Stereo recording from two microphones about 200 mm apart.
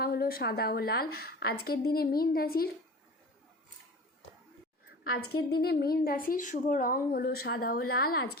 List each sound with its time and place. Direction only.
0.0 s speech: 50° left (ahead or behind)
5.3 s speech: 50° left (ahead or behind)